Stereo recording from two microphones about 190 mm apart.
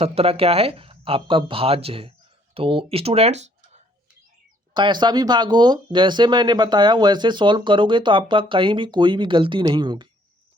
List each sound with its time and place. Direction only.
0.0 s speech: 30° right (ahead or behind)
4.7 s speech: 25° right (ahead or behind)